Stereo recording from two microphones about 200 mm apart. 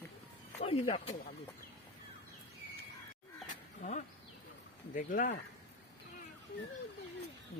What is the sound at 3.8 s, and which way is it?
Speech, 35° left (ahead or behind).